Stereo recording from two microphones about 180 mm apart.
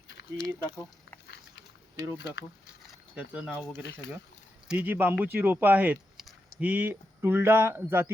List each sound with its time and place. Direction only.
0.4 s speech: 25° left (ahead or behind)
1.3 s a sound: 70° left (ahead or behind)
3.2 s speech: 5° right (ahead or behind)
4.7 s speech: 10° right (ahead or behind)